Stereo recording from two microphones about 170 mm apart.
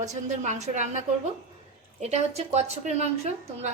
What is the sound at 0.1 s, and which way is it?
A woman's voice, 45° right (ahead or behind).